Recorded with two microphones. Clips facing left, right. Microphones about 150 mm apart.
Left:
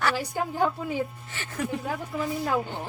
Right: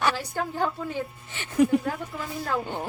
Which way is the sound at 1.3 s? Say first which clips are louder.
Right 11 dB; 20° right (ahead or behind).